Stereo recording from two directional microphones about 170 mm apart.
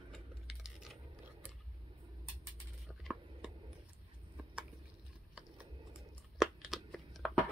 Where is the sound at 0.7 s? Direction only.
Centre (ahead or behind).